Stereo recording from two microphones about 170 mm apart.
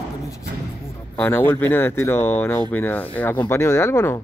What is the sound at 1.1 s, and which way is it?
Speech, 10° left (ahead or behind).